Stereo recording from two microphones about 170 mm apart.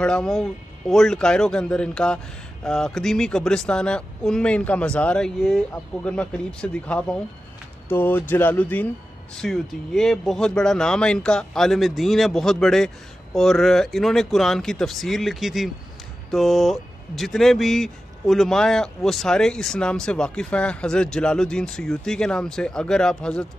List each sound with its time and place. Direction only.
0.0 s speech: 5° left (ahead or behind)